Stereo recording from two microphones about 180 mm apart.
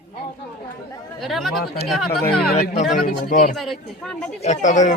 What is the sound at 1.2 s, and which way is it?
Speech, centre (ahead or behind).